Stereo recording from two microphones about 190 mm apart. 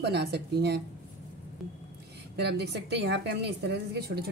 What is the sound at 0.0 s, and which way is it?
Speech, 60° right (ahead or behind).